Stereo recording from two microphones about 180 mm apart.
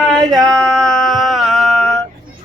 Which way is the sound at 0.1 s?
Centre (ahead or behind).